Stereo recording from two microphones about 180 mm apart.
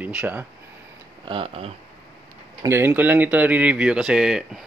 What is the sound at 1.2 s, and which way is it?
Speech, 30° right (ahead or behind).